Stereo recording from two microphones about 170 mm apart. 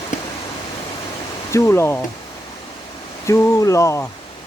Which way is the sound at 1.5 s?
15° left (ahead or behind).